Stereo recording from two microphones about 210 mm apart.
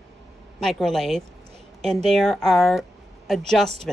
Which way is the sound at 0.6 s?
Centre (ahead or behind).